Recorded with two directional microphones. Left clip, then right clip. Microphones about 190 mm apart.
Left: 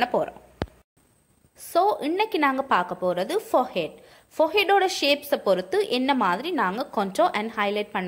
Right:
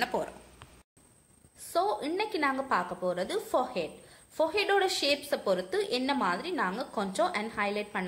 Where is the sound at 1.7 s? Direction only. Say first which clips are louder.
Left 7 dB; 45° left (ahead or behind).